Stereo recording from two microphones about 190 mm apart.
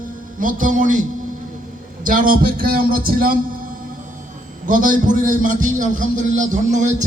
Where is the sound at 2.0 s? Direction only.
45° right (ahead or behind).